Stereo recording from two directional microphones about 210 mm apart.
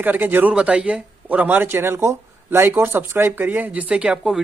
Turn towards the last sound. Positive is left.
turn(degrees=-5)  # may be behind; listen again after turning